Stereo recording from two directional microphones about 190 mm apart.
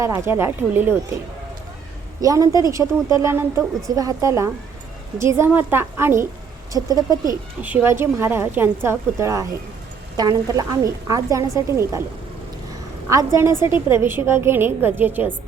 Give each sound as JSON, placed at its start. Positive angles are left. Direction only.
{"t": 0.0, "sound": "a woman's voice", "side_deg": -15}
{"t": 2.2, "sound": "a woman's voice", "side_deg": -15}
{"t": 13.1, "sound": "a woman's voice", "side_deg": -15}